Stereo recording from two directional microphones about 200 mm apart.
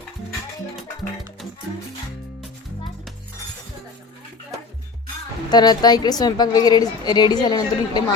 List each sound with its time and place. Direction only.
5.5 s a woman's voice: 20° left (ahead or behind)